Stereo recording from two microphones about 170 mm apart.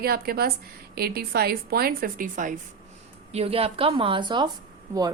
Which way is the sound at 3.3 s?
35° right (ahead or behind).